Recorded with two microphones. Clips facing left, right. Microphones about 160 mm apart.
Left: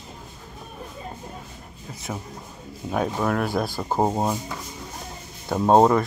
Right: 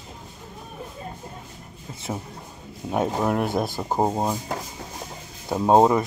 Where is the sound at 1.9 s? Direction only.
25° right (ahead or behind).